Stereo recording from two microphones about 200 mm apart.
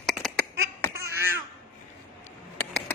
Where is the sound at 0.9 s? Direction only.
15° right (ahead or behind).